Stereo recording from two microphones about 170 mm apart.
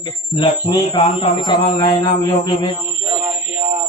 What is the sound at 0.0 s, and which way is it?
Speech, 30° left (ahead or behind).